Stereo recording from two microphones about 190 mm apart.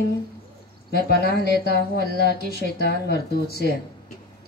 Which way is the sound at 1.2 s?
55° left (ahead or behind).